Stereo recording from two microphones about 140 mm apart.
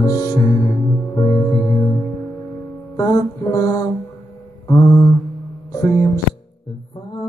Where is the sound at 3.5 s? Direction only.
25° left (ahead or behind).